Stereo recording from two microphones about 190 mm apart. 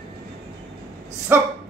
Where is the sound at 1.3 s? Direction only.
10° right (ahead or behind).